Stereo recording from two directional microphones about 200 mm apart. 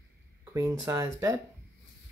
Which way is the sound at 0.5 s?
15° right (ahead or behind).